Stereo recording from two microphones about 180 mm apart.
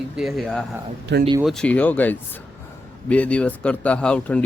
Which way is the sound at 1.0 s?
65° right (ahead or behind).